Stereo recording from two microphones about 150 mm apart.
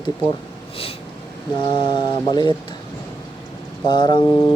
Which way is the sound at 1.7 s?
30° left (ahead or behind).